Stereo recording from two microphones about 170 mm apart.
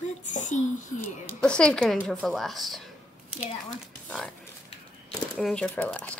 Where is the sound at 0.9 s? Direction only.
5° left (ahead or behind).